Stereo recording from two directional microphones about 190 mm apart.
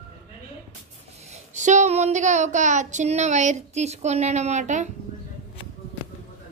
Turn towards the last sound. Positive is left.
turn(degrees=-40)  # may be behind; listen again after turning